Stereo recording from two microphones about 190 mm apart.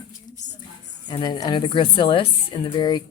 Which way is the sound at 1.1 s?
20° left (ahead or behind).